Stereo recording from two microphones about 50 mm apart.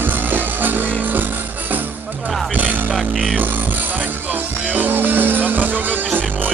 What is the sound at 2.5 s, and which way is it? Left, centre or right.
Music, right.